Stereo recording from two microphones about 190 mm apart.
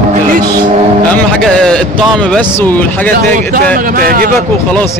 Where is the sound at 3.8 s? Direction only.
50° right (ahead or behind).